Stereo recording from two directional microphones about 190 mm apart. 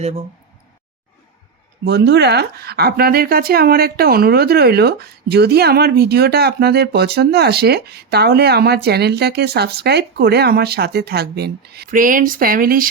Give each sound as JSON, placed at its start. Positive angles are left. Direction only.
{"t": 1.8, "sound": "speech", "side_deg": -60}